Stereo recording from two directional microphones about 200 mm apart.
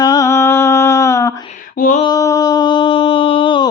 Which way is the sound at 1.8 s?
40° left (ahead or behind).